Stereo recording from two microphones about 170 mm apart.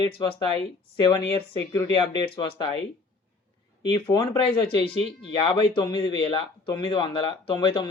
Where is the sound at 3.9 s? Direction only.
30° left (ahead or behind).